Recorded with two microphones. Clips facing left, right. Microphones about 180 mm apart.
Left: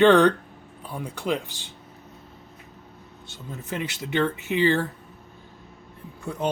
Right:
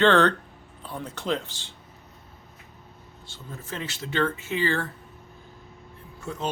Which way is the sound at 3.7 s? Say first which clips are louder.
Left 4 dB; 15° left (ahead or behind).